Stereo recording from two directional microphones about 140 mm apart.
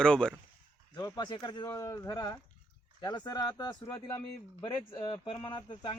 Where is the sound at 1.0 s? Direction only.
30° left (ahead or behind).